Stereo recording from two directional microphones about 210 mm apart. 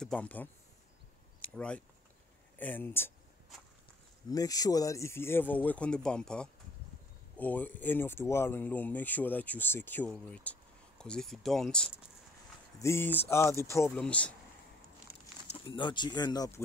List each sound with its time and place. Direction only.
0.0 s speech: 5° left (ahead or behind)
4.3 s speech: 15° left (ahead or behind)
15.4 s speech: 25° left (ahead or behind)